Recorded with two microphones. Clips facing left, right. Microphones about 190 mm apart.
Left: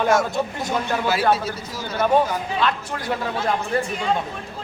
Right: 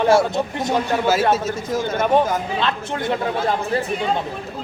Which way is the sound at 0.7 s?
40° right (ahead or behind).